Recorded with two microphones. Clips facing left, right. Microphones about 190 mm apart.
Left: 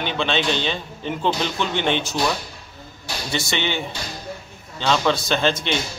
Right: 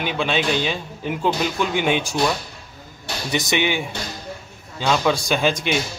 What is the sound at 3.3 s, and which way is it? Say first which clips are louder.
Speech: right 4 dB; 15° right (ahead or behind).